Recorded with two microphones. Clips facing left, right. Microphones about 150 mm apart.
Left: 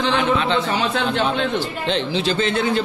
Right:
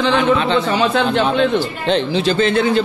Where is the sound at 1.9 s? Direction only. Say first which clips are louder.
Right 5 dB; 50° right (ahead or behind); by 2.8 s 80° right.